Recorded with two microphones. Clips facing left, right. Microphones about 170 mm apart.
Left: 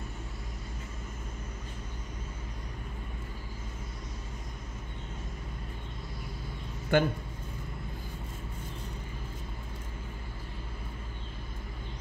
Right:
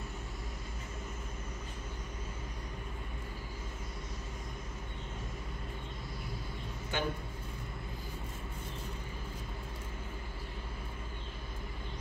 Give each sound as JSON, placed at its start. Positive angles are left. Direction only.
{"t": 6.9, "sound": "a man's voice", "side_deg": 55}